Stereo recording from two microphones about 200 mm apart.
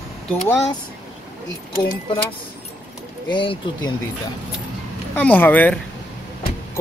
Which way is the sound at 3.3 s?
25° left (ahead or behind).